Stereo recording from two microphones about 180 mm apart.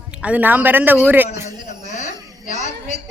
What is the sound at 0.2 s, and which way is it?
A woman's voice, 10° right (ahead or behind).